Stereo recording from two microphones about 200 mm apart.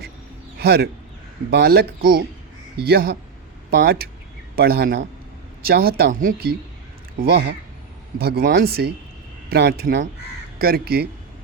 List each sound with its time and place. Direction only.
0.6 s a man's voice: 50° right (ahead or behind)